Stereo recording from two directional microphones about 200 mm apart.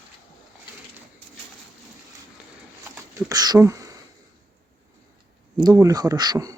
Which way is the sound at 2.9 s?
15° right (ahead or behind).